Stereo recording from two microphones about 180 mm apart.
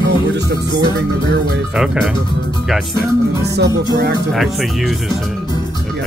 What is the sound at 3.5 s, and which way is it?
Music, 65° right (ahead or behind).